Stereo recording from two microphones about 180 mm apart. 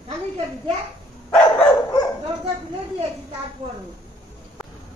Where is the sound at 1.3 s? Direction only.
25° left (ahead or behind).